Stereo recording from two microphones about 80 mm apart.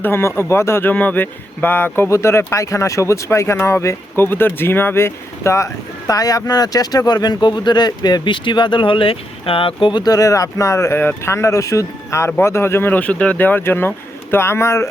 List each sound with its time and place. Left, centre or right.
0.0 s speech: left
2.0 s speech: left
10.1 s speech: left